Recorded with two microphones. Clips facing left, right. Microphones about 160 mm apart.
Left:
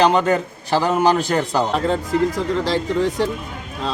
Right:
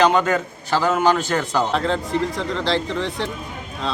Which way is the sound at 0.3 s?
35° left (ahead or behind).